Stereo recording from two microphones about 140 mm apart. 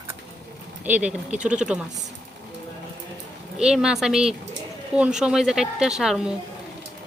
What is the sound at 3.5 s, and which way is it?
A woman's voice, 5° right (ahead or behind).